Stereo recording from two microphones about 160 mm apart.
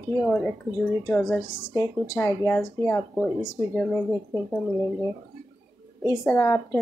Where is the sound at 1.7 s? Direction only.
20° left (ahead or behind).